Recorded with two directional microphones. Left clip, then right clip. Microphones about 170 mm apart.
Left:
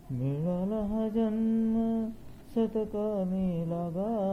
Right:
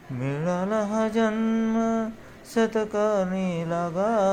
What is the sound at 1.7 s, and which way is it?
Mantra, 30° right (ahead or behind).